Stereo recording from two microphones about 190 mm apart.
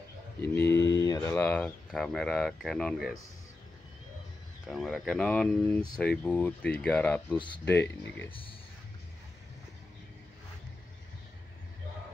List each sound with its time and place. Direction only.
0.8 s speech: 20° left (ahead or behind); by 3.2 s centre (ahead or behind)
4.6 s speech: centre (ahead or behind)
7.3 s speech: 25° left (ahead or behind)
7.6 s speech: 10° left (ahead or behind)
8.3 s speech: 30° left (ahead or behind)